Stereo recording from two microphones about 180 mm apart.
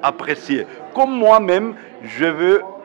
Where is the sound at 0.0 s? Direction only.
10° right (ahead or behind).